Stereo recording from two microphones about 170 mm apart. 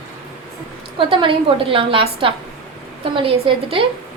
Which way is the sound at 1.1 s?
30° right (ahead or behind).